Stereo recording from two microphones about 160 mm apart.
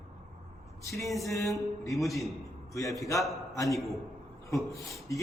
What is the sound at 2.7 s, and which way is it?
Speech, 20° left (ahead or behind).